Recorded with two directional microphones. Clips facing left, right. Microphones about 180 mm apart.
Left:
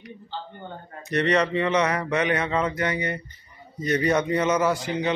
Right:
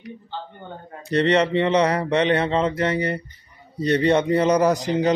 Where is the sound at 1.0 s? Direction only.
30° right (ahead or behind).